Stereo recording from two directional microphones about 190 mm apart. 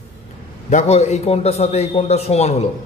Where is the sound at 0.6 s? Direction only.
35° left (ahead or behind).